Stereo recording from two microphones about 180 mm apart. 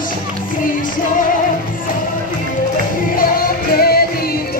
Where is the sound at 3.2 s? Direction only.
55° left (ahead or behind).